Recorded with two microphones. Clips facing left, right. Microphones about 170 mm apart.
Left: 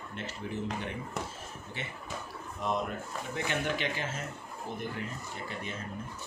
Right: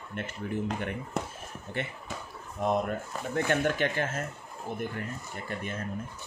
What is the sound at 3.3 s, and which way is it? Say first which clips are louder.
Speech: right 6 dB; 50° right (ahead or behind).